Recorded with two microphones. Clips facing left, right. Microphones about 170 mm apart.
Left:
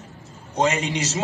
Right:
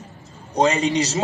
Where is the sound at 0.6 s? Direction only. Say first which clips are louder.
Right 4 dB; 35° right (ahead or behind).